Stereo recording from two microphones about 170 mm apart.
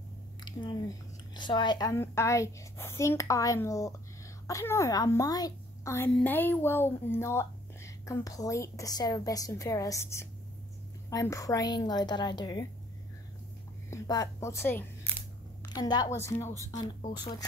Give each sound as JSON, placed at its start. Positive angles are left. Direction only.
{"t": 0.5, "sound": "speech", "side_deg": 25}
{"t": 13.8, "sound": "speech", "side_deg": 20}
{"t": 15.6, "sound": "speech", "side_deg": 25}